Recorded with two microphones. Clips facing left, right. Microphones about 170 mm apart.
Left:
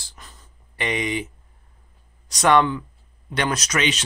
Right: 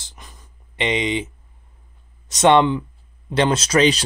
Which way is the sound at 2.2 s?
25° right (ahead or behind).